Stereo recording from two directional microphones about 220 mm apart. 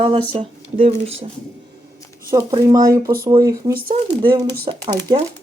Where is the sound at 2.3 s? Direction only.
15° right (ahead or behind).